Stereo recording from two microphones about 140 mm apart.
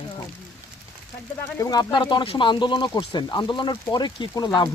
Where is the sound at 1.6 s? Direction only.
30° left (ahead or behind).